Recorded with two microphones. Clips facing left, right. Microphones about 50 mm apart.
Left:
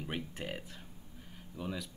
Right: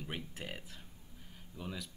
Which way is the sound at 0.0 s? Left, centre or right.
Centre.